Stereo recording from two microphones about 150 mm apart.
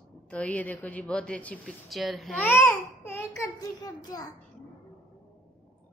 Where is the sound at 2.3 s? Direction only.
15° left (ahead or behind).